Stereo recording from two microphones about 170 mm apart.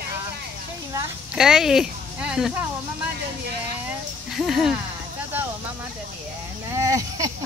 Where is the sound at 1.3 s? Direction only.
5° right (ahead or behind).